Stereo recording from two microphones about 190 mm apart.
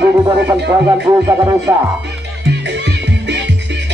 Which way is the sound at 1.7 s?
15° right (ahead or behind).